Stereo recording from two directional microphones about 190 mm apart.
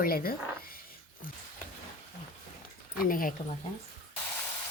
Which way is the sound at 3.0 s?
50° left (ahead or behind).